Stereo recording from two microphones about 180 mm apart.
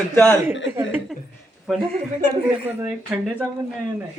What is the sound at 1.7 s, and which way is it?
A man's voice, 5° right (ahead or behind).